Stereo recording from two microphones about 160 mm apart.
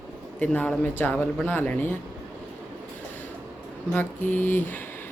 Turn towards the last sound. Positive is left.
turn(degrees=10)  # may be behind; listen again after turning